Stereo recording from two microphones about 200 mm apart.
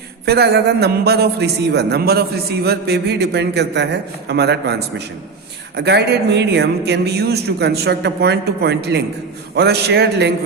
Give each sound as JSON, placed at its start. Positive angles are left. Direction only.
{"t": 0.3, "sound": "a man's voice", "side_deg": -55}